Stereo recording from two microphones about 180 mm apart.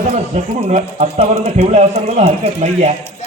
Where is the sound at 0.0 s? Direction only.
40° right (ahead or behind).